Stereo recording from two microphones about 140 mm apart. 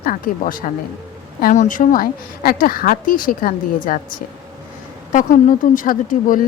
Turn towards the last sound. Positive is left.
turn(degrees=75)  # may be behind; listen again after turning